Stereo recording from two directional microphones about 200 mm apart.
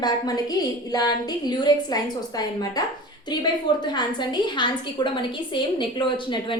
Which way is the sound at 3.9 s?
20° left (ahead or behind).